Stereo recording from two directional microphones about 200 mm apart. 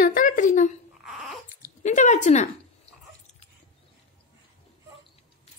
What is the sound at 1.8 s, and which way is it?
Speech, 35° left (ahead or behind).